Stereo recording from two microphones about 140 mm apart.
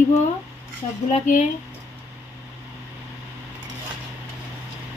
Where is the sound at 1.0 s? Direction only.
60° left (ahead or behind).